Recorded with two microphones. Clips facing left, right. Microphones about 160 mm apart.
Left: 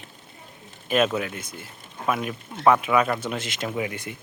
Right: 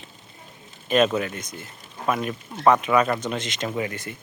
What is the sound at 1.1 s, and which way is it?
Speech, 5° left (ahead or behind).